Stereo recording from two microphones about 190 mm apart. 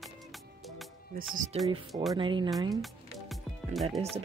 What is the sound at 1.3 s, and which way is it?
Speech, 40° right (ahead or behind).